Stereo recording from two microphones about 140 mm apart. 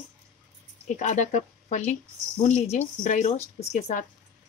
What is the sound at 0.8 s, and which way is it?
Speech, 60° left (ahead or behind).